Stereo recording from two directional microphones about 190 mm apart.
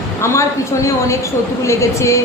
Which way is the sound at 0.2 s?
15° left (ahead or behind).